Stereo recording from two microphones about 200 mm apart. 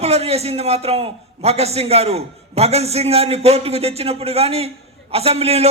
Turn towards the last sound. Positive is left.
turn(degrees=-30)  # may be behind; listen again after turning